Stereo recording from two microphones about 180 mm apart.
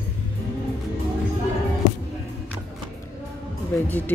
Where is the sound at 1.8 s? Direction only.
45° left (ahead or behind).